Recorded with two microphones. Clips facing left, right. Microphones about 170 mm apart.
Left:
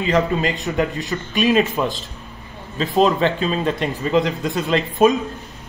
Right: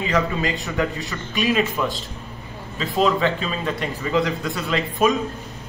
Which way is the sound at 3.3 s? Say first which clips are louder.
Left 4 dB; 25° left (ahead or behind).